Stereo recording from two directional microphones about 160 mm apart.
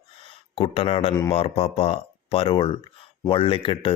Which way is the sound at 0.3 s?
35° left (ahead or behind).